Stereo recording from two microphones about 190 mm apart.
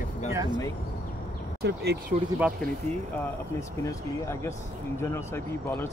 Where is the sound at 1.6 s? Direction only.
60° right (ahead or behind).